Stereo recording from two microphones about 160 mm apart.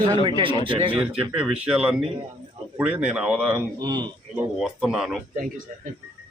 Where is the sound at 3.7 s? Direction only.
25° right (ahead or behind).